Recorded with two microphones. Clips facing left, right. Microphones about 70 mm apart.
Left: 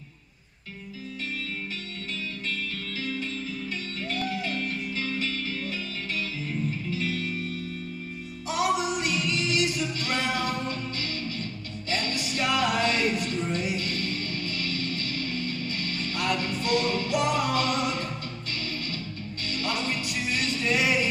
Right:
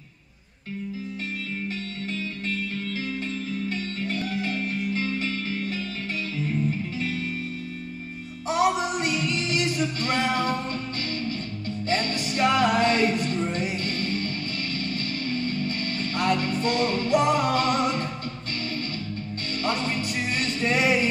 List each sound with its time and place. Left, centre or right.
4.9 s music: right
8.5 s music: right
12.4 s music: right
16.2 s music: right
20.2 s music: right